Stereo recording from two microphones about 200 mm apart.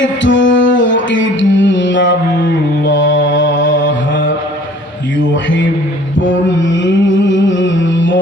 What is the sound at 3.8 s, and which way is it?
Mantra, 70° left (ahead or behind).